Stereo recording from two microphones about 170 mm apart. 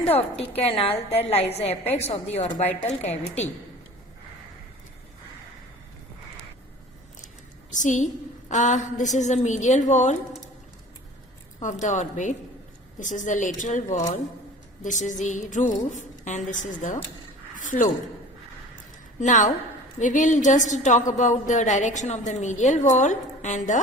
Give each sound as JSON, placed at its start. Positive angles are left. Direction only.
{"t": 0.0, "sound": "a woman's voice", "side_deg": 35}
{"t": 7.7, "sound": "a woman's voice", "side_deg": 45}
{"t": 11.6, "sound": "a woman's voice", "side_deg": 45}
{"t": 14.8, "sound": "a woman's voice", "side_deg": 45}
{"t": 19.2, "sound": "a woman's voice", "side_deg": 45}